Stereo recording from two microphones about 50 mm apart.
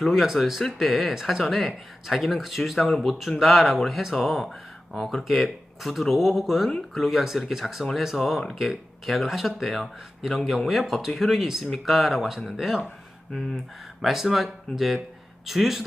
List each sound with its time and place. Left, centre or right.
0.0 s speech: centre
14.0 s speech: centre